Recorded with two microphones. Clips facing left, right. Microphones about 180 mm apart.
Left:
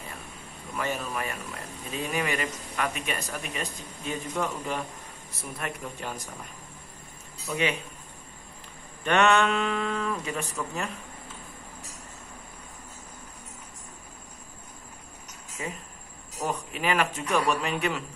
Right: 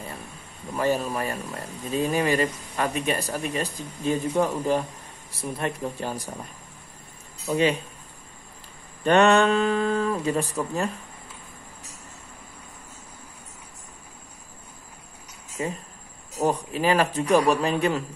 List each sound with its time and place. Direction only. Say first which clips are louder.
0.7 s speech: right 7 dB; 35° right (ahead or behind)
7.4 s speech: right 6 dB; 35° right (ahead or behind)
9.0 s speech: right 5 dB; 35° right (ahead or behind)
15.6 s speech: right 7 dB; 35° right (ahead or behind)